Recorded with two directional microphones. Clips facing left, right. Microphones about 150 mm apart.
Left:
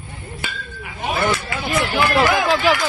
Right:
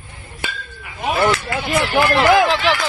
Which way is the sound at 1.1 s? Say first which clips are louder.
Right 3 dB; 35° right (ahead or behind).